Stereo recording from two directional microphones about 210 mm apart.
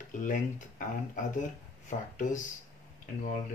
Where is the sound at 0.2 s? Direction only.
40° left (ahead or behind).